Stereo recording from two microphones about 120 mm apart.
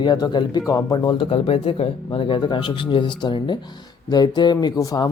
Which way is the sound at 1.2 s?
50° left (ahead or behind).